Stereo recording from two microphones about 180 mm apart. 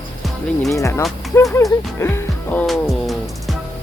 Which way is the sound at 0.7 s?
15° left (ahead or behind).